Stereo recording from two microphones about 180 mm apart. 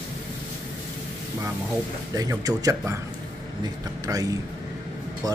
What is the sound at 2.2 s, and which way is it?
Speech, 20° right (ahead or behind).